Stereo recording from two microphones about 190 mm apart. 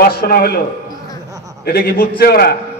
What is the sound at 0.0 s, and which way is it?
Speech, 50° left (ahead or behind).